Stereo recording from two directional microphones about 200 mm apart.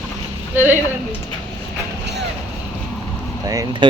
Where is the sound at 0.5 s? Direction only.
10° right (ahead or behind).